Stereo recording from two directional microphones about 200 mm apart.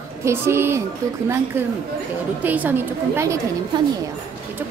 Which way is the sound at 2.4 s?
10° right (ahead or behind).